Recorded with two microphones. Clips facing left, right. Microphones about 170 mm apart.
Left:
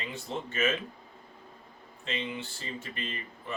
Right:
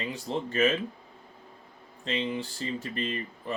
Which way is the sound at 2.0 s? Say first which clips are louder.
Right 5 dB; 35° right (ahead or behind).